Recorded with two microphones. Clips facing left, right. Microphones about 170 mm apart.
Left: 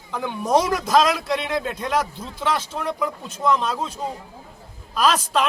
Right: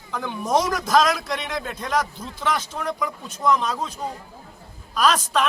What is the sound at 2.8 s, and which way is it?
A man's voice, centre (ahead or behind).